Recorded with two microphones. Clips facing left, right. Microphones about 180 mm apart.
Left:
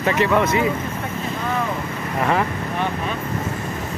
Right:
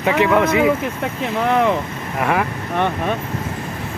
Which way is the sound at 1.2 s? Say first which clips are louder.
Right 8 dB; 80° right.